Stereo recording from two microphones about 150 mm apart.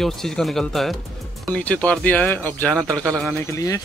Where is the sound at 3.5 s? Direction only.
20° left (ahead or behind).